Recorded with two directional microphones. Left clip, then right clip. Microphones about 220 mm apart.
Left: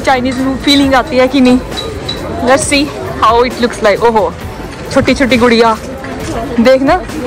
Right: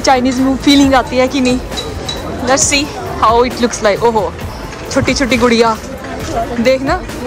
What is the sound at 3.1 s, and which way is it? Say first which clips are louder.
Speech: left 2 dB; 20° right (ahead or behind).